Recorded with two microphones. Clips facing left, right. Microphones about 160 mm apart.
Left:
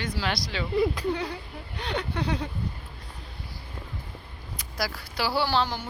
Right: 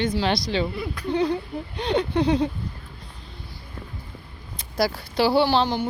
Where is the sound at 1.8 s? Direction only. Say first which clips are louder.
Right 9 dB; 20° right (ahead or behind).